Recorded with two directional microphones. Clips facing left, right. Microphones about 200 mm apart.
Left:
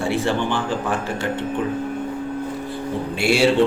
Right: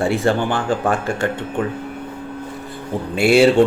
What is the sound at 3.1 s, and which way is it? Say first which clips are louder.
Speech: right 7 dB; 55° right (ahead or behind).